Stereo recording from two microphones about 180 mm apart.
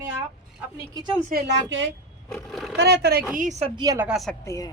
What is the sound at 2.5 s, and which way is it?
Speech, centre (ahead or behind).